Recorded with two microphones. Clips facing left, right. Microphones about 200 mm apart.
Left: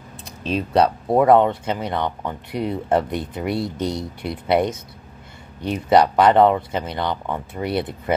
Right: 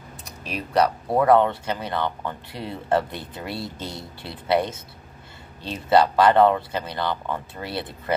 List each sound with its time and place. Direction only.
0.4 s speech: 25° left (ahead or behind)